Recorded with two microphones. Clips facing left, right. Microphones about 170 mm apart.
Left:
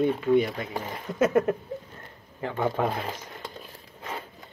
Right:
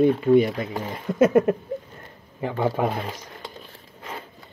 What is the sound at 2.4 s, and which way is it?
Speech, 15° right (ahead or behind).